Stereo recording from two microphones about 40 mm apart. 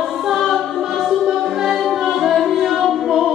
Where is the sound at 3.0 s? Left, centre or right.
Centre.